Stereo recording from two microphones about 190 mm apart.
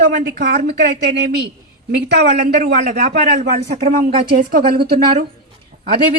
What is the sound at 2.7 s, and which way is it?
A woman's voice, 45° right (ahead or behind).